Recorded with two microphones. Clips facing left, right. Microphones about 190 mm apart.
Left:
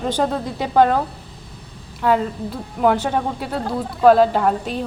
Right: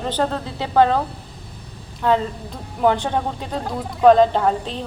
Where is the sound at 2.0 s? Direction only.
10° left (ahead or behind).